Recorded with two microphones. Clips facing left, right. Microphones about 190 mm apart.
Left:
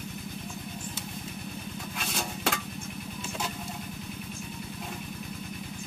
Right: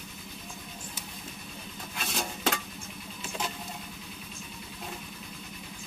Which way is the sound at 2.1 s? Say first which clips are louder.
Right 1 dB; centre (ahead or behind).